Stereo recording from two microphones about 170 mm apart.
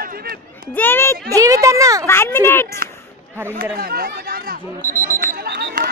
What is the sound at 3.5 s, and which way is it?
Speech, 60° right (ahead or behind).